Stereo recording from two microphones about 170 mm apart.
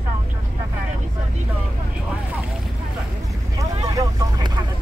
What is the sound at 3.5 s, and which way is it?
Boat, 20° right (ahead or behind).